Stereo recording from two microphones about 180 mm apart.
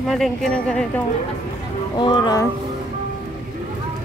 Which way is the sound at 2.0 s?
25° left (ahead or behind).